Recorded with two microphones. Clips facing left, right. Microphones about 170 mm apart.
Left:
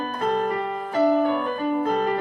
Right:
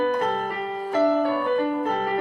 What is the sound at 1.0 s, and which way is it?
Music, 15° left (ahead or behind).